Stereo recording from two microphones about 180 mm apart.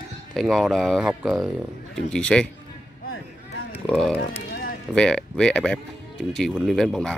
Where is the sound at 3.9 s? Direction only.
5° left (ahead or behind).